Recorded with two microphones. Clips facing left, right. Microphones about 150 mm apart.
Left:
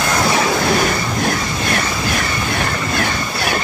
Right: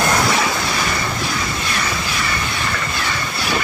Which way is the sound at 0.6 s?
55° left (ahead or behind).